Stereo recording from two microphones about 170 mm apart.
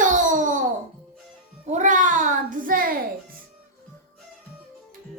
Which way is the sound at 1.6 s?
45° right (ahead or behind).